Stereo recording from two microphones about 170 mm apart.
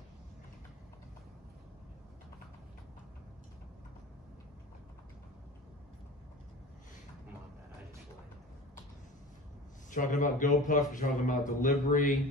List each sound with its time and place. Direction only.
9.8 s speech: 50° left (ahead or behind)